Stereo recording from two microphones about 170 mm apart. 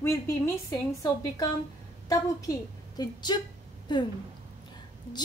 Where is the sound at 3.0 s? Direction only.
25° left (ahead or behind).